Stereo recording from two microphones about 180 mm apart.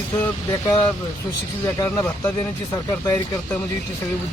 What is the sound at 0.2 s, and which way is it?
Speech, 20° left (ahead or behind).